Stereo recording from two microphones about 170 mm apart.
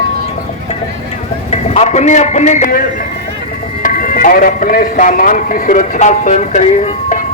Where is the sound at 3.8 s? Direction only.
55° left (ahead or behind).